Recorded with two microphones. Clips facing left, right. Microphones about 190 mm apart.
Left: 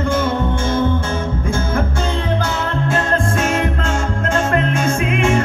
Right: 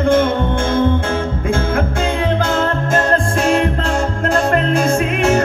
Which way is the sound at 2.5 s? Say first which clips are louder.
Right 3 dB; 40° right (ahead or behind).